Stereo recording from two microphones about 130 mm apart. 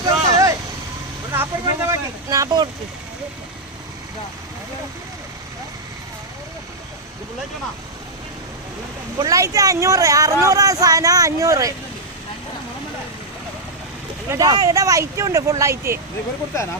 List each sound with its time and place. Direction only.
0.0 s vehicle: 25° right (ahead or behind)
1.3 s speech: 20° right (ahead or behind)
9.1 s speech: 25° right (ahead or behind)
14.3 s speech: 30° right (ahead or behind)